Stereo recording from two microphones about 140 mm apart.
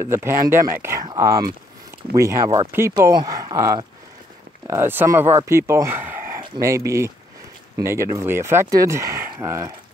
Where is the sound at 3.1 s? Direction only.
30° right (ahead or behind).